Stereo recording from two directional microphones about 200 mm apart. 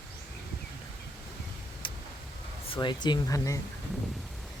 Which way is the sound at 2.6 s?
25° left (ahead or behind).